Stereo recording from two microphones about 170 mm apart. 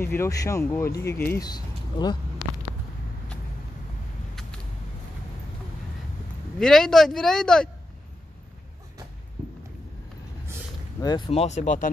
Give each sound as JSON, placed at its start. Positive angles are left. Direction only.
{"t": 0.0, "sound": "speech", "side_deg": 15}
{"t": 1.4, "sound": "speech", "side_deg": 25}
{"t": 6.6, "sound": "speech", "side_deg": 5}
{"t": 11.0, "sound": "speech", "side_deg": 25}
{"t": 11.3, "sound": "speech", "side_deg": 40}